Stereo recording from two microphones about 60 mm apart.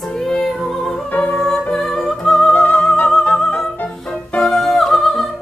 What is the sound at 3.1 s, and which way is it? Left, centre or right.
Opera, centre.